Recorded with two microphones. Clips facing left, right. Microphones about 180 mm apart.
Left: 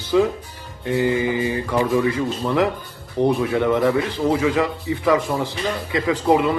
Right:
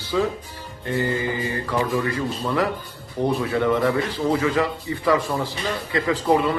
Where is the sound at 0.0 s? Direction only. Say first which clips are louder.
Left 5 dB; 15° left (ahead or behind).